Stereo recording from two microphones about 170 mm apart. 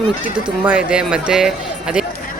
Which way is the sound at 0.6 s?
5° right (ahead or behind).